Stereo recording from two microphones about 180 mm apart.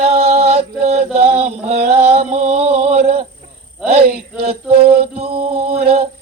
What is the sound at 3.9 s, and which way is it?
Male singing, 35° right (ahead or behind).